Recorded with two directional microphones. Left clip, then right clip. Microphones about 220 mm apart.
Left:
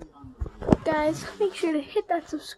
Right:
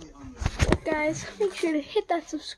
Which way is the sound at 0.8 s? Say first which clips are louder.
Left 3 dB; 15° left (ahead or behind).